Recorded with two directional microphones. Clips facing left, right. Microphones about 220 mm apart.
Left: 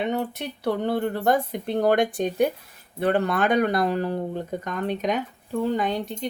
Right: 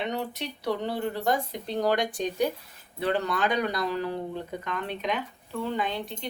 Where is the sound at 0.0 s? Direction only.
50° left (ahead or behind).